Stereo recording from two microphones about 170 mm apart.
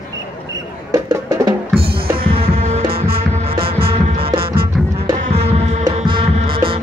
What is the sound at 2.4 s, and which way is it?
Music, 60° right (ahead or behind).